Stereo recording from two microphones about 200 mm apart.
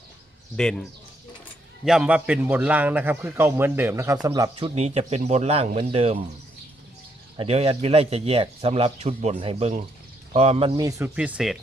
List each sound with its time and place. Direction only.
0.5 s a man's voice: 5° left (ahead or behind); by 4.7 s 20° right (ahead or behind)
4.7 s speech: 30° right (ahead or behind)
7.3 s speech: 30° right (ahead or behind)
10.8 s a man's voice: 15° right (ahead or behind)
11.1 s speech: 5° right (ahead or behind)